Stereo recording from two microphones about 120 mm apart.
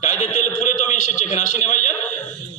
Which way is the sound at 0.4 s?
85° left.